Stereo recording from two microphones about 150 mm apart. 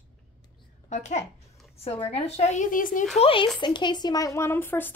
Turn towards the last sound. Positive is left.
turn(degrees=15)  # may be behind; listen again after turning